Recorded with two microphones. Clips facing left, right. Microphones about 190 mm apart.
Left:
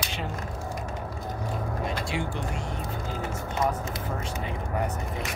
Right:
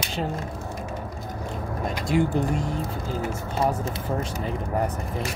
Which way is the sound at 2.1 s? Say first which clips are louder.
Right 9 dB; 40° right (ahead or behind).